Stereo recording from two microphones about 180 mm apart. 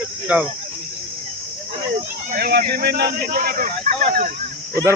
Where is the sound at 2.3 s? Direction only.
55° right (ahead or behind).